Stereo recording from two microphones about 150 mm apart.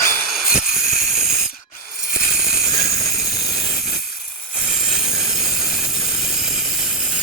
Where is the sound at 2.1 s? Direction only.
5° right (ahead or behind).